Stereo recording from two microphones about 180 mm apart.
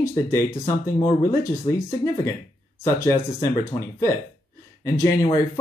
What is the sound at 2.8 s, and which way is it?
Speech, 15° left (ahead or behind).